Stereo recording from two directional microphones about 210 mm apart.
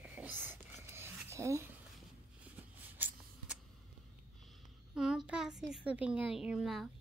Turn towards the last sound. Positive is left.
turn(degrees=0)  # may be behind; listen again after turning